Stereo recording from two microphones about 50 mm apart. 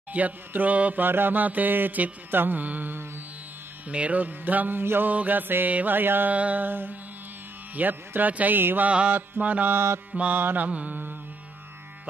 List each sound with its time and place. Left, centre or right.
0.1 s music: right
5.1 s music: right
6.3 s music: right
8.5 s mantra: right
8.8 s music: right
9.7 s mantra: right
10.1 s music: right